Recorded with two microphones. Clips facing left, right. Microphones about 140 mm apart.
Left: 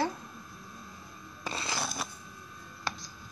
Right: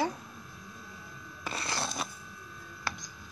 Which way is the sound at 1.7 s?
Centre (ahead or behind).